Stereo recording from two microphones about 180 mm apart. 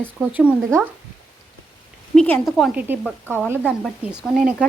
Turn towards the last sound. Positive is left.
turn(degrees=-5)  # may be behind; listen again after turning